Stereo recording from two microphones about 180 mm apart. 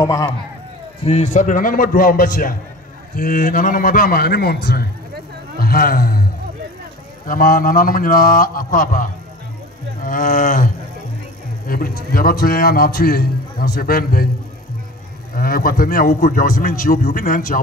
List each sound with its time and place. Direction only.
0.0 s a man's voice: 20° left (ahead or behind)
1.0 s a man's voice: 40° left (ahead or behind); by 6.2 s 55° left (ahead or behind)
7.2 s a man's voice: 50° left (ahead or behind)
15.3 s a man's voice: 55° left (ahead or behind)